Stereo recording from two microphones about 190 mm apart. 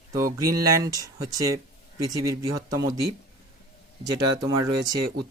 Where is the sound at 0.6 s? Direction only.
15° right (ahead or behind).